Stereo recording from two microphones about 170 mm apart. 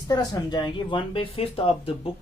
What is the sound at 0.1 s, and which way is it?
Speech, 25° left (ahead or behind).